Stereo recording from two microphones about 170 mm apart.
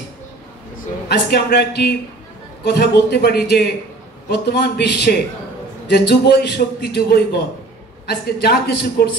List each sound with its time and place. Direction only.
1.0 s a man's voice: 75° left (ahead or behind)